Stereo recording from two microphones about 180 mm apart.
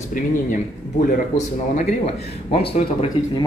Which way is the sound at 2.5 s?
30° left (ahead or behind).